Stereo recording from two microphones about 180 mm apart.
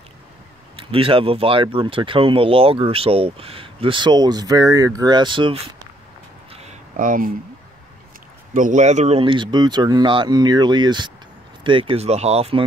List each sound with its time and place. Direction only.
0.7 s speech: 30° right (ahead or behind)
6.5 s a sound: 40° right (ahead or behind)
8.5 s speech: 45° right (ahead or behind)